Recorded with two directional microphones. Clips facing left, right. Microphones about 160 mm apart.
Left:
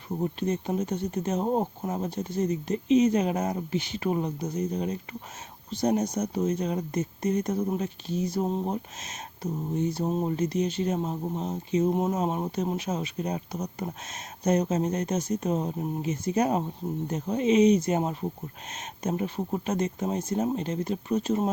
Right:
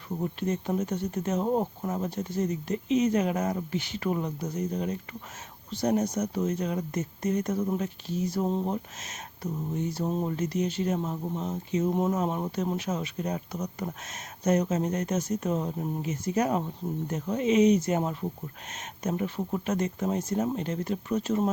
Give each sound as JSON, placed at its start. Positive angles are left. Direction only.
{"t": 0.2, "sound": "speech", "side_deg": 25}